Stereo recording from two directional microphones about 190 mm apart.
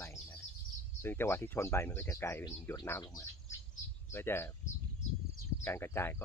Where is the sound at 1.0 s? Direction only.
10° left (ahead or behind).